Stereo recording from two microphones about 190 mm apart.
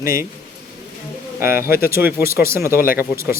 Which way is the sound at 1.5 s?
50° left (ahead or behind).